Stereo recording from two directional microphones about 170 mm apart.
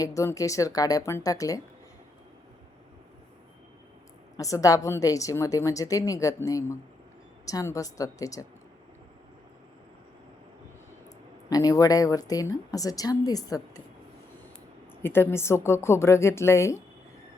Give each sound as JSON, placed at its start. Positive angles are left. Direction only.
{"t": 0.0, "sound": "a woman's voice", "side_deg": 20}
{"t": 4.4, "sound": "a woman's voice", "side_deg": 20}
{"t": 11.4, "sound": "a woman's voice", "side_deg": 20}
{"t": 15.0, "sound": "speech", "side_deg": 15}